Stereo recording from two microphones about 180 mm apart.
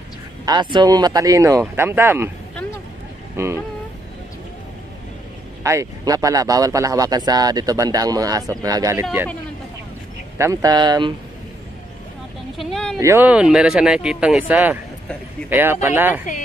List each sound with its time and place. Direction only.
0.5 s speech: 25° right (ahead or behind)
3.4 s speech: 15° right (ahead or behind)
5.6 s speech: 15° right (ahead or behind)
10.3 s speech: 15° right (ahead or behind)
12.5 s a sound: centre (ahead or behind)
13.0 s speech: 10° right (ahead or behind)